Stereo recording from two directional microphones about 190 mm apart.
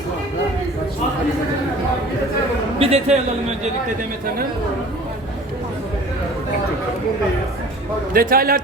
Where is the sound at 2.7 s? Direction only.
30° right (ahead or behind).